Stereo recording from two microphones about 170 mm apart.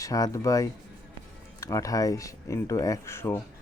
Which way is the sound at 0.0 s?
20° left (ahead or behind).